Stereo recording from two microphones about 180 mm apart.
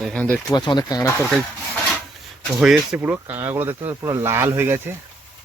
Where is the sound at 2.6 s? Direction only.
5° right (ahead or behind).